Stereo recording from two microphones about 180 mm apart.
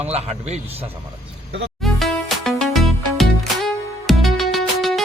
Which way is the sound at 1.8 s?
Centre (ahead or behind).